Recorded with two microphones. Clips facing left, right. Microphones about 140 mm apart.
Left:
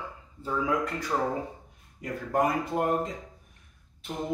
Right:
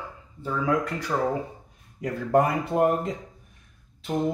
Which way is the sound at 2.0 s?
75° right (ahead or behind).